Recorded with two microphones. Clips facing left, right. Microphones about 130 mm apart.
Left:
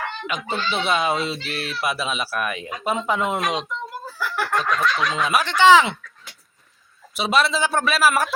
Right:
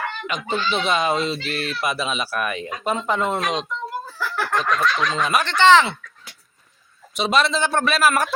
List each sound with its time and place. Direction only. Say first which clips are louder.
0.3 s speech: right 2 dB; 5° left (ahead or behind)
4.2 s snicker: even; centre (ahead or behind)
5.1 s speech: even; 5° left (ahead or behind)
7.1 s speech: right 1 dB; 5° left (ahead or behind)